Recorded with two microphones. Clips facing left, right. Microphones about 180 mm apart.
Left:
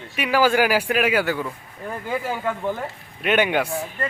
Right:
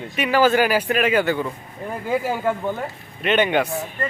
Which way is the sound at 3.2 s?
10° left (ahead or behind).